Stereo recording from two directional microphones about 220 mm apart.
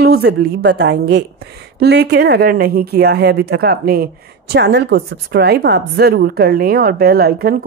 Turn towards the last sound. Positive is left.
turn(degrees=-45)  # may be behind; listen again after turning